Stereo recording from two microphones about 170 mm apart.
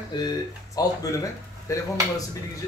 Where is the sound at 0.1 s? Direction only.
25° left (ahead or behind).